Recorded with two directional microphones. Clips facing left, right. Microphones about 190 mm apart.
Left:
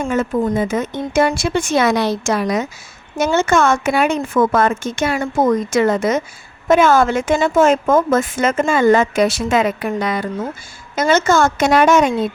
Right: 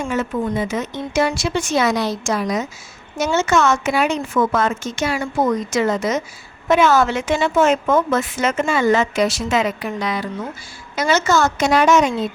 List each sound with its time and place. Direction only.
0.0 s a woman's voice: 50° left (ahead or behind)
3.2 s a woman's voice: 50° left (ahead or behind)